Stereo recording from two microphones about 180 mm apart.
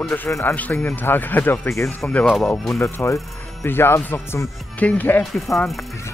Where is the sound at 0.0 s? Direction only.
10° left (ahead or behind).